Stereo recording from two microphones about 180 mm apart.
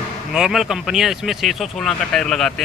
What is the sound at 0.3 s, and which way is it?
Speech, centre (ahead or behind).